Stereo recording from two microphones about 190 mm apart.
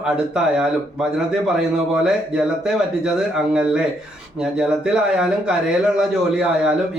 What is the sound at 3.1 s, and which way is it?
Speech, 5° right (ahead or behind).